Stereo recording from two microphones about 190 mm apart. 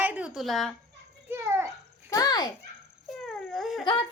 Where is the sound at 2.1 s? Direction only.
20° left (ahead or behind).